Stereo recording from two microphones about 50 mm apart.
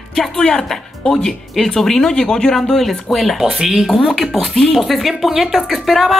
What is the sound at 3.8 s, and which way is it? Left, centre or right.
Speech, centre.